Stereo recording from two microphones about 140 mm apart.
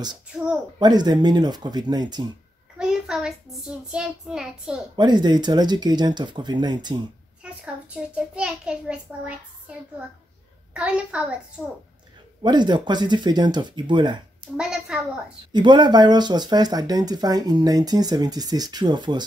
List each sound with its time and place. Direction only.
0.7 s speech: 30° right (ahead or behind)
2.8 s a child's voice: 5° right (ahead or behind)
4.9 s speech: 30° right (ahead or behind)
7.4 s a child's voice: 10° right (ahead or behind)
12.4 s speech: 30° right (ahead or behind)
14.6 s a woman's voice: 5° right (ahead or behind)
15.5 s speech: 30° right (ahead or behind)